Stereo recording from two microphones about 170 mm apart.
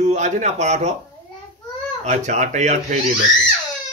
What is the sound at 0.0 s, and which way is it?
Speech, 45° right (ahead or behind).